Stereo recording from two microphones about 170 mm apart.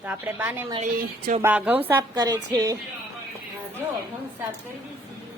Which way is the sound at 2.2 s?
25° right (ahead or behind).